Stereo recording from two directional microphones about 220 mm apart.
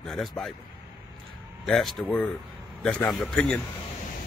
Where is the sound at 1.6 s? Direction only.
Centre (ahead or behind).